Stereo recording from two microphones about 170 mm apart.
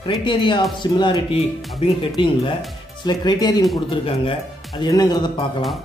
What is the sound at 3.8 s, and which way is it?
Speech, 35° left (ahead or behind).